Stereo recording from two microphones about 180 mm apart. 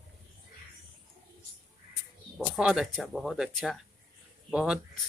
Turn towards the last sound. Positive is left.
turn(degrees=-5)  # may be behind; listen again after turning